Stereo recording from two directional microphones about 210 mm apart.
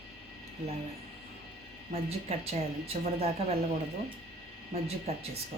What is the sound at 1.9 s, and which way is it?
Speech, 30° right (ahead or behind).